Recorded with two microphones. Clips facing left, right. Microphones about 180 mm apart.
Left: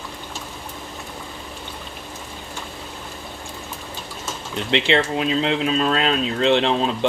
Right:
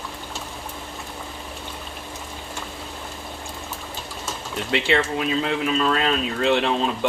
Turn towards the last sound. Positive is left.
turn(degrees=20)  # may be behind; listen again after turning